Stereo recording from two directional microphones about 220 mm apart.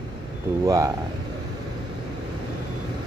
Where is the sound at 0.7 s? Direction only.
15° right (ahead or behind).